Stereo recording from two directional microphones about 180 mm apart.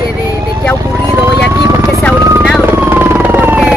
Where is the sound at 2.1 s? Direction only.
15° right (ahead or behind).